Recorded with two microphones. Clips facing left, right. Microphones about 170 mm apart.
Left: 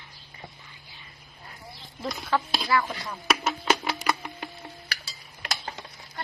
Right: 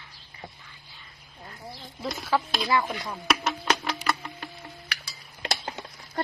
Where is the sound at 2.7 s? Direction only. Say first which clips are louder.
Even; 20° right (ahead or behind).